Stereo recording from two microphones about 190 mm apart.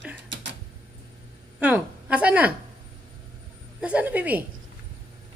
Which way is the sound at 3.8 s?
10° right (ahead or behind).